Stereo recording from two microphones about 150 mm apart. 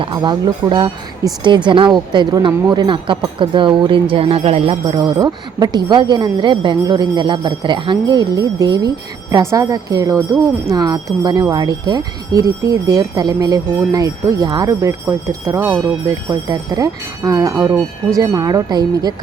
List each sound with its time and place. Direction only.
0.0 s speech: 30° right (ahead or behind)